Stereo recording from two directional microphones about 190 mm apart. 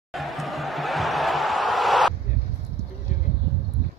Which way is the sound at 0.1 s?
Centre (ahead or behind).